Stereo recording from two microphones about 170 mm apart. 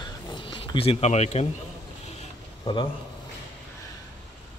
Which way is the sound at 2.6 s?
25° left (ahead or behind).